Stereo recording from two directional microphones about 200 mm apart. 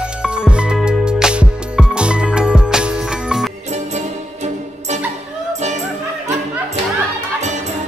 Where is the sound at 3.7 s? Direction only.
35° right (ahead or behind).